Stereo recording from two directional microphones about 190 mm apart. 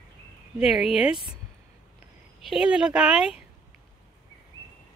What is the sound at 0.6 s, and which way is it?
Speech, 5° right (ahead or behind).